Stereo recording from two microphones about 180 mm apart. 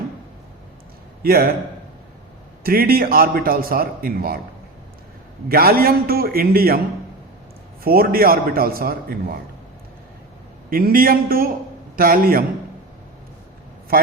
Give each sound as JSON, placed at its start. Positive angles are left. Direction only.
{"t": 1.2, "sound": "a man's voice", "side_deg": -55}
{"t": 2.6, "sound": "a man's voice", "side_deg": -55}
{"t": 5.5, "sound": "a man's voice", "side_deg": -55}
{"t": 7.9, "sound": "a man's voice", "side_deg": -55}
{"t": 10.7, "sound": "a man's voice", "side_deg": -55}